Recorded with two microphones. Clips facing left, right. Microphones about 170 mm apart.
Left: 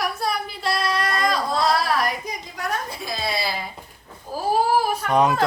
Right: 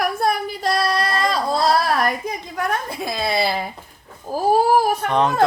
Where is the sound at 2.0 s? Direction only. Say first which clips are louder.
Right 4 dB; 55° right (ahead or behind).